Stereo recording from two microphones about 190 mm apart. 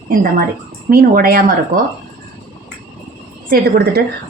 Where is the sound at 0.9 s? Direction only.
50° right (ahead or behind).